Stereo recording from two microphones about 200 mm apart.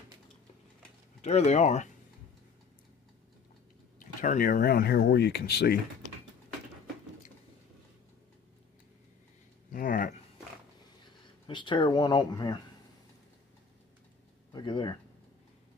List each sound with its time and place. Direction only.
1.2 s speech: 35° left (ahead or behind)
4.0 s speech: 40° left (ahead or behind)
9.7 s a sound: 45° left (ahead or behind)
11.4 s speech: 25° left (ahead or behind)
14.5 s speech: 25° left (ahead or behind)